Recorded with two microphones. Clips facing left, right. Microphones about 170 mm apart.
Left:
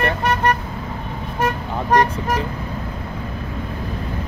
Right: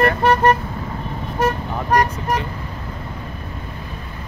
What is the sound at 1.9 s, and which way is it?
Speech, 25° left (ahead or behind).